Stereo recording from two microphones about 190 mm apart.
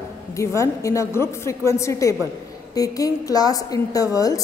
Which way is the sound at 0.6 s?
15° left (ahead or behind).